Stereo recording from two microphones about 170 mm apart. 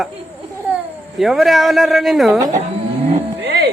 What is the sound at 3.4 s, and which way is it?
Music, 75° right (ahead or behind).